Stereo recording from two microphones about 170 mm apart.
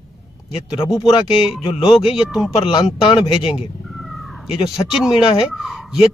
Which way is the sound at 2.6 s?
25° left (ahead or behind).